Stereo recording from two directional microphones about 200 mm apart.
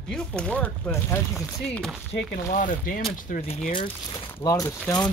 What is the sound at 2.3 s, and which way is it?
Speech, 40° left (ahead or behind).